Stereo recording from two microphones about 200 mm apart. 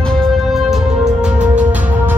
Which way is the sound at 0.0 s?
Centre (ahead or behind).